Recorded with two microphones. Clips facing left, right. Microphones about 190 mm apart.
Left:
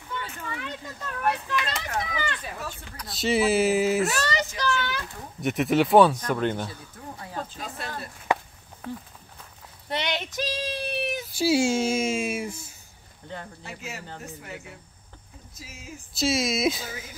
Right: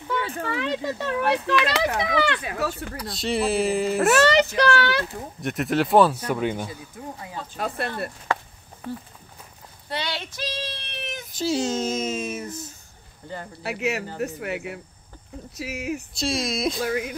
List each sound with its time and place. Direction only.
0.1 s speech: 80° right
3.0 s speech: centre (ahead or behind)
4.1 s speech: 65° right (ahead or behind)
5.4 s speech: centre (ahead or behind)
7.5 s speech: 60° right (ahead or behind)
8.3 s a sound: 15° left (ahead or behind)
9.8 s speech: 20° left (ahead or behind)
13.6 s speech: 75° right (ahead or behind)
16.2 s speech: 5° left (ahead or behind)
16.8 s speech: 65° right (ahead or behind)